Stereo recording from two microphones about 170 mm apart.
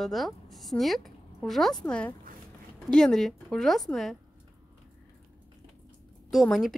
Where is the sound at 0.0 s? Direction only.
Centre (ahead or behind).